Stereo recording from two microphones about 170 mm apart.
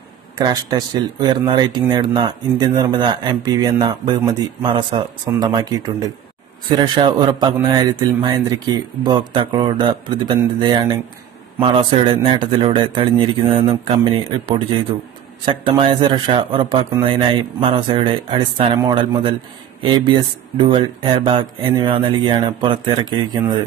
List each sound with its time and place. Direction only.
0.4 s speech: 25° right (ahead or behind)
15.4 s speech: 30° right (ahead or behind)